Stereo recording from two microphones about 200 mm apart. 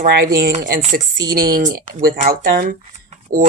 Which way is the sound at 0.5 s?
40° right (ahead or behind).